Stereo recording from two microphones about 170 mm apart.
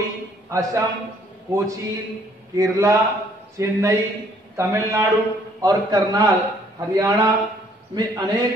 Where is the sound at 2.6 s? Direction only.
20° right (ahead or behind).